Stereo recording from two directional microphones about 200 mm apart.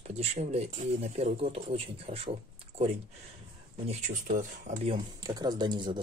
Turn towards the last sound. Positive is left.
turn(degrees=-20)  # may be behind; listen again after turning